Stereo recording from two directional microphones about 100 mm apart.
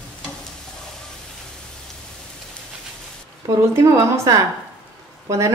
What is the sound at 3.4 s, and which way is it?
A woman's voice, 35° right (ahead or behind).